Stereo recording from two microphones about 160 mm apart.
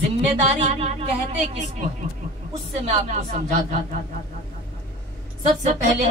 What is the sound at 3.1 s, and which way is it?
Music, 45° right (ahead or behind).